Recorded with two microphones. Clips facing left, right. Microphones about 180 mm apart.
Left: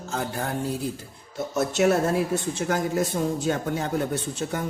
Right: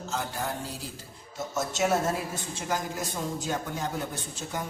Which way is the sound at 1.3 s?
65° left (ahead or behind).